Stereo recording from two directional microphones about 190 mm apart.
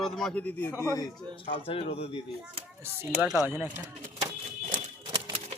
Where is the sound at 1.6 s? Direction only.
30° left (ahead or behind).